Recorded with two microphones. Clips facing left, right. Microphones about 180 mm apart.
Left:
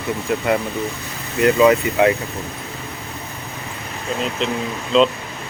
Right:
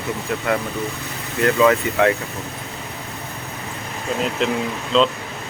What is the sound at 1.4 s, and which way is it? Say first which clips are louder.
Speech: left 2 dB; 15° left (ahead or behind).